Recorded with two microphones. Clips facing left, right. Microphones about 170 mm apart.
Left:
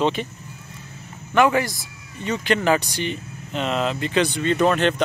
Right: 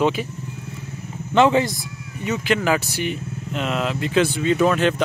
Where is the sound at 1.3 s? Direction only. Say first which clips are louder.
Right 2 dB; 25° right (ahead or behind).